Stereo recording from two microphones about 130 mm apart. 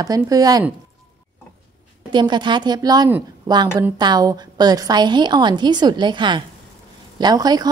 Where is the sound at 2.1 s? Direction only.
35° right (ahead or behind).